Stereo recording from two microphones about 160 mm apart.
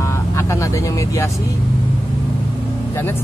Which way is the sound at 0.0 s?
15° left (ahead or behind).